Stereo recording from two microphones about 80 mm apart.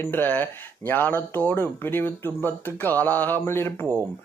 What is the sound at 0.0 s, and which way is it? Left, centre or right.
Speech, left.